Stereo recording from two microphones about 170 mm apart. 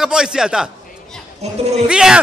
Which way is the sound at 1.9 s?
5° right (ahead or behind).